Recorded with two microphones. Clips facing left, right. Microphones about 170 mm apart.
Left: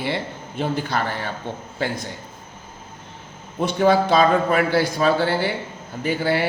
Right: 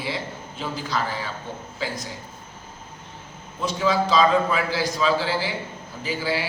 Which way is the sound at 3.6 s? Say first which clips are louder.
Left 5 dB; 60° left (ahead or behind).